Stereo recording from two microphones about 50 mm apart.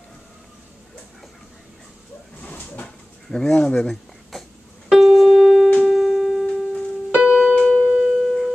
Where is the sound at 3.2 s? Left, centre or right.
Centre.